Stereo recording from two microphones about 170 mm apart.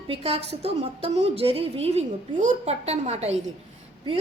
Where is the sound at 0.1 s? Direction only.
35° right (ahead or behind).